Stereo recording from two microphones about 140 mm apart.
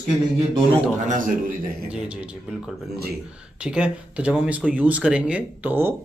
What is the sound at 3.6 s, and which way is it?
Speech, 10° right (ahead or behind).